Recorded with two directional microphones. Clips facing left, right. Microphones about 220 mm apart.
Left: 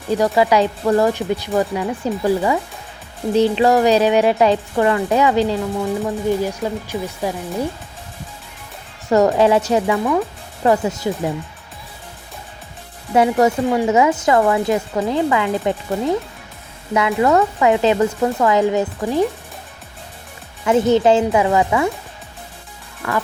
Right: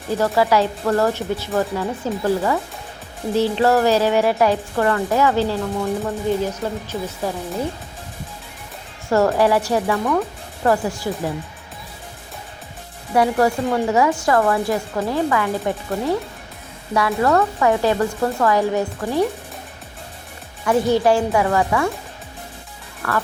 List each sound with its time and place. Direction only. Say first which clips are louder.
0.2 s speech: left 1 dB; 15° left (ahead or behind)
9.0 s speech: left 3 dB; 20° left (ahead or behind)
13.1 s speech: left 2 dB; 20° left (ahead or behind)
20.7 s speech: left 3 dB; 20° left (ahead or behind)
23.0 s speech: left 1 dB; 15° left (ahead or behind)